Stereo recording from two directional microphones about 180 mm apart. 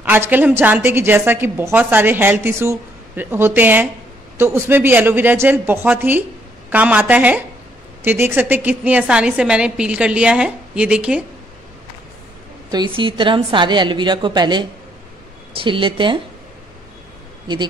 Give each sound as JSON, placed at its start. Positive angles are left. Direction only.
{"t": 0.0, "sound": "a woman's voice", "side_deg": -10}
{"t": 12.7, "sound": "a woman's voice", "side_deg": -25}